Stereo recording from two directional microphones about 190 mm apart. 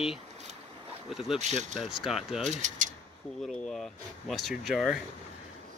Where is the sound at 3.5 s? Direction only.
Centre (ahead or behind).